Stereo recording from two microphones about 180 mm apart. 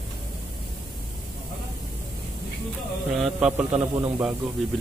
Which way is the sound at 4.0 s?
25° right (ahead or behind).